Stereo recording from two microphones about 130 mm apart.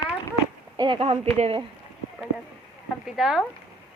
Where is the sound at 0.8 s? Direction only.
45° right (ahead or behind).